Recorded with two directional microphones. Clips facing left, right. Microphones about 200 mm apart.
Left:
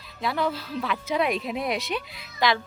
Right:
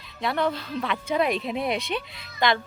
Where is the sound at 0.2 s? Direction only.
Centre (ahead or behind).